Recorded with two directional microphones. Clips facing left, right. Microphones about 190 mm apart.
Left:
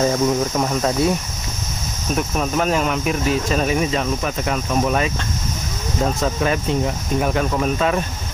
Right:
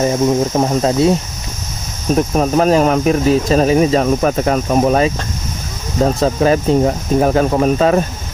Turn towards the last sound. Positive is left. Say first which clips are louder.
# right 7 dB
turn(degrees=-40)  # may be behind; listen again after turning